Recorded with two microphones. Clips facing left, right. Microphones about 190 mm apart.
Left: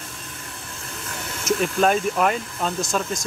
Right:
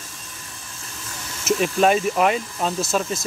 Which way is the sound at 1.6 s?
5° right (ahead or behind).